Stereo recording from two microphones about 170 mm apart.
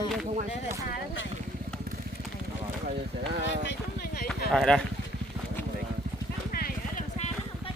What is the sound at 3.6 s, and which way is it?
Vehicle, 65° left (ahead or behind).